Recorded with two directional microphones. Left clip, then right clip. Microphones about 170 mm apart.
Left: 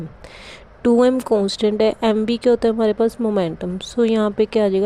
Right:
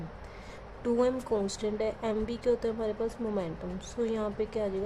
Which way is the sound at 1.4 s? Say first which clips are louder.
Left 14 dB; 50° left (ahead or behind).